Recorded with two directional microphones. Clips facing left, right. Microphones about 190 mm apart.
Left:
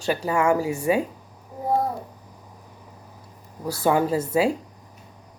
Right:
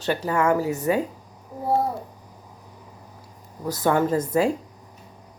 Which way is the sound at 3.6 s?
10° left (ahead or behind).